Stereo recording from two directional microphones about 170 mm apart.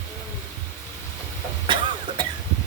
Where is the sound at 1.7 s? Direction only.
30° right (ahead or behind).